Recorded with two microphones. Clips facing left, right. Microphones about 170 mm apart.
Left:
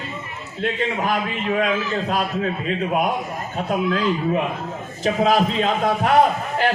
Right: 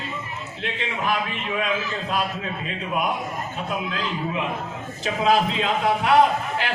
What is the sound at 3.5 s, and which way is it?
A man's voice, 45° left (ahead or behind).